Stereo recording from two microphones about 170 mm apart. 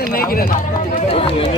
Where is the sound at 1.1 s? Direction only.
35° left (ahead or behind).